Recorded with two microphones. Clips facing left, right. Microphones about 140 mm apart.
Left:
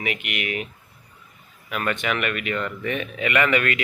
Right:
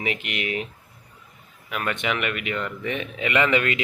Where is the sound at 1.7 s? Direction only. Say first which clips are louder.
Left 1 dB; 15° right (ahead or behind).